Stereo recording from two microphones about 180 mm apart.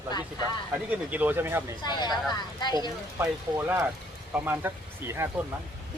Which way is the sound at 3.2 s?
10° right (ahead or behind).